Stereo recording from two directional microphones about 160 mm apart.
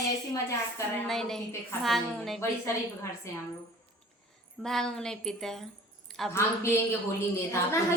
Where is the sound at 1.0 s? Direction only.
Centre (ahead or behind).